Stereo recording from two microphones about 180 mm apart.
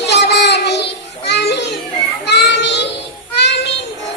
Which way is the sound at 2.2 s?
70° left (ahead or behind).